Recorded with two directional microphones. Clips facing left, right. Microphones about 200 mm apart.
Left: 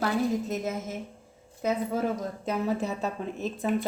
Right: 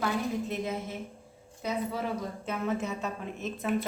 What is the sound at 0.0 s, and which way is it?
Speech, 40° left (ahead or behind).